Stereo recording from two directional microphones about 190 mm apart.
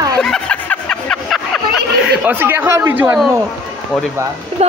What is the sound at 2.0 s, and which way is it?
A woman's voice, 10° right (ahead or behind).